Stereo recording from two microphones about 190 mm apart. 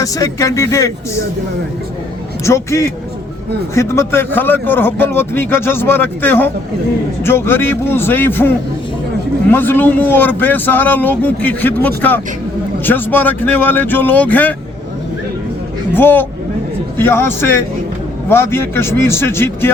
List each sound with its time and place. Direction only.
0.0 s a man's voice: 15° left (ahead or behind)
2.4 s a man's voice: 15° left (ahead or behind)
15.9 s a man's voice: 10° left (ahead or behind)